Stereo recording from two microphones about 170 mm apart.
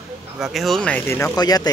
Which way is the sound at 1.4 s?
25° left (ahead or behind).